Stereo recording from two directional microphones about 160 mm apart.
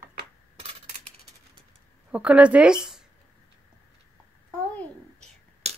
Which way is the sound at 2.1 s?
5° right (ahead or behind).